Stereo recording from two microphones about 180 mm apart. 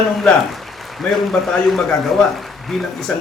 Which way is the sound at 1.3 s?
Centre (ahead or behind).